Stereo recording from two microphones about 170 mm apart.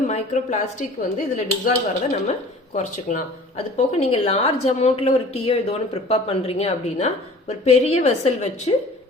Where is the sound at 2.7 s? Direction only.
50° left (ahead or behind).